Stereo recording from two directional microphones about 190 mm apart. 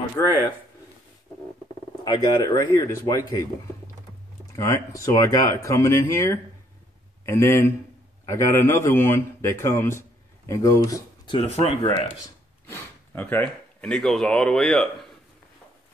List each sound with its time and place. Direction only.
0.2 s speech: 15° left (ahead or behind)
2.0 s speech: 20° left (ahead or behind)
11.3 s speech: 30° left (ahead or behind)
12.6 s speech: 10° left (ahead or behind)